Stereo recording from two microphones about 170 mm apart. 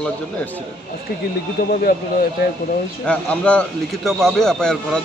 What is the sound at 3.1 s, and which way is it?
A man's voice, 5° left (ahead or behind).